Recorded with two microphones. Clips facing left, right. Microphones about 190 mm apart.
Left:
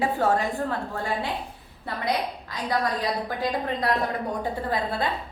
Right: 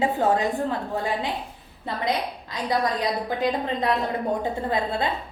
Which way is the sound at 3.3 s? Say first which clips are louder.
Right 2 dB; 20° right (ahead or behind).